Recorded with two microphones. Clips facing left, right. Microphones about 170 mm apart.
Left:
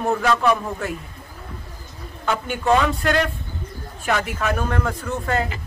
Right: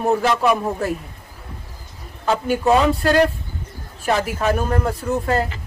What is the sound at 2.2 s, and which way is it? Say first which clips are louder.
Speech: right 5 dB; 35° right (ahead or behind).